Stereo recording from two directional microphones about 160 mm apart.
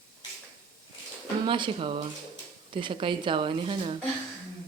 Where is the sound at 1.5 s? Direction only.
30° right (ahead or behind).